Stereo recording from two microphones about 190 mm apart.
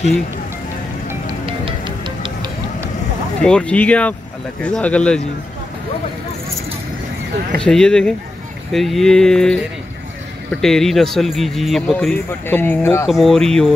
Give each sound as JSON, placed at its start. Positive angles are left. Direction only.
{"t": 1.4, "sound": "music", "side_deg": -30}
{"t": 3.4, "sound": "speech", "side_deg": 5}
{"t": 7.5, "sound": "speech", "side_deg": 5}
{"t": 13.0, "sound": "speech", "side_deg": 0}